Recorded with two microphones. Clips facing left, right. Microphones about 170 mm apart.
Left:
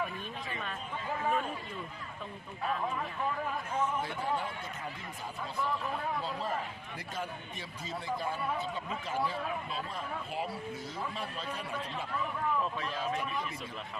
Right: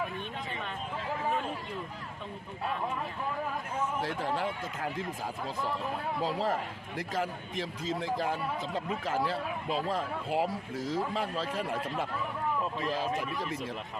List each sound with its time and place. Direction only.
4.0 s a man's voice: 90° right
6.2 s a man's voice: 90° right